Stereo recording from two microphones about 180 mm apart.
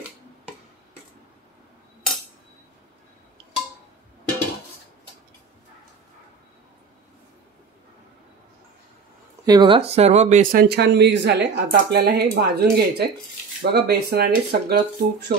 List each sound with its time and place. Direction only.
9.5 s speech: 25° right (ahead or behind); by 15.3 s 65° right (ahead or behind)